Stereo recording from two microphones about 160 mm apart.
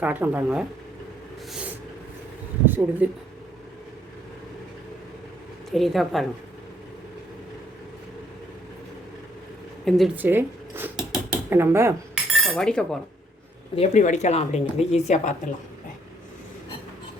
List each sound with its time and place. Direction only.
0.0 s speech: 10° right (ahead or behind)
2.6 s speech: 15° right (ahead or behind)
5.7 s a woman's voice: centre (ahead or behind)
10.2 s speech: 15° right (ahead or behind)
10.9 s mechanisms: 5° right (ahead or behind)
11.4 s speech: 15° right (ahead or behind)
12.1 s cutlery: 5° left (ahead or behind)
13.7 s speech: 45° left (ahead or behind)